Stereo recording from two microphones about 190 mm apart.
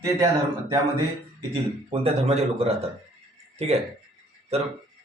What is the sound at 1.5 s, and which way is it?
Speech, 30° right (ahead or behind).